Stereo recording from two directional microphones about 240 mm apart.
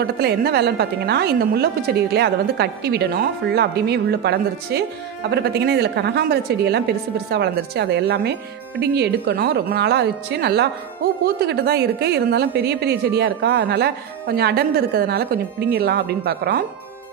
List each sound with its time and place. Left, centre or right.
0.0 s a woman's voice: right